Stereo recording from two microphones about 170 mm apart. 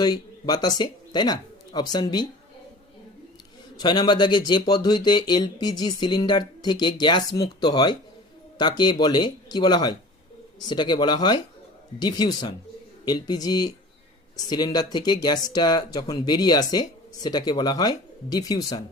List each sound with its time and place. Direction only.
0.0 s speech: 25° left (ahead or behind)
3.8 s speech: 25° left (ahead or behind)